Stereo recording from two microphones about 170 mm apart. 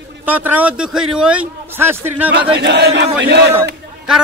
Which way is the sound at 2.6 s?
85° right.